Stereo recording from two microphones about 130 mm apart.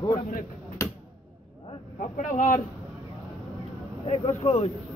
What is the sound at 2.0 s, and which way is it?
Speech, 75° left (ahead or behind).